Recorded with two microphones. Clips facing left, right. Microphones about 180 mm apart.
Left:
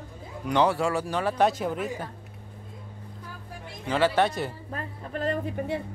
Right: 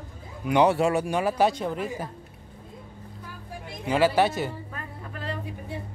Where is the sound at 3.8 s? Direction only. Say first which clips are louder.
Right 2 dB; 10° right (ahead or behind).